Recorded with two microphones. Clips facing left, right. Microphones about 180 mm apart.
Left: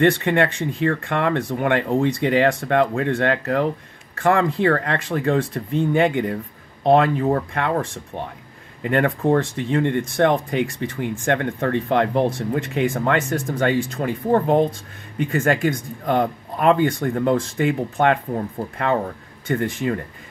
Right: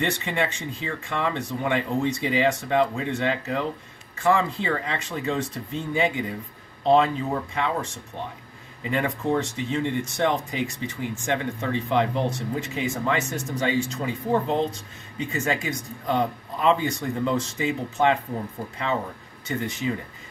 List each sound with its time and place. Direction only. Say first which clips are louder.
0.2 s speech: left 8 dB; 60° left (ahead or behind)
19.4 s speech: left 5 dB; 55° left (ahead or behind)